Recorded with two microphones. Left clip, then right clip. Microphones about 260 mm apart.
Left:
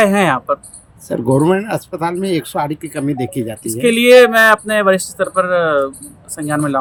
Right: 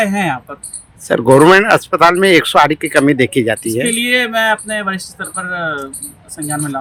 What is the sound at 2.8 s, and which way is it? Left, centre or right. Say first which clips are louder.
Speech: right 10 dB; right.